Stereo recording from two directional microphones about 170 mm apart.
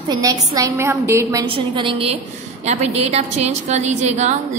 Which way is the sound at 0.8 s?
15° right (ahead or behind).